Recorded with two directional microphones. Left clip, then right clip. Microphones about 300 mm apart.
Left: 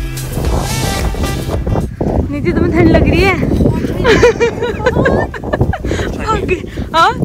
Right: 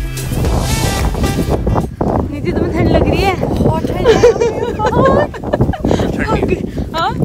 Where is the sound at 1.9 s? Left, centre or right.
Left.